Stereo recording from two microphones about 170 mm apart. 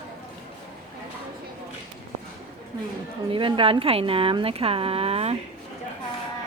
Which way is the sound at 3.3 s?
30° right (ahead or behind).